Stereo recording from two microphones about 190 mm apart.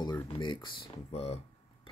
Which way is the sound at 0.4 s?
25° left (ahead or behind).